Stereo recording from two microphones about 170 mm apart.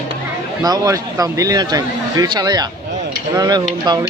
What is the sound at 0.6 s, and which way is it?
Speech, 20° right (ahead or behind).